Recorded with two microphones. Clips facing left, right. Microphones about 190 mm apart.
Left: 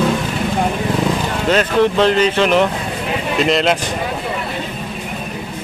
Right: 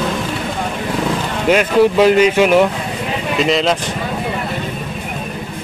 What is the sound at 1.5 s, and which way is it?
Speech, 10° right (ahead or behind).